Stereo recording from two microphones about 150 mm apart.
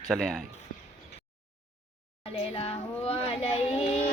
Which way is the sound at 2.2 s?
40° left (ahead or behind).